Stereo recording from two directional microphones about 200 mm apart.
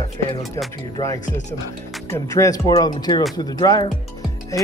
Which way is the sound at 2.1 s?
15° left (ahead or behind).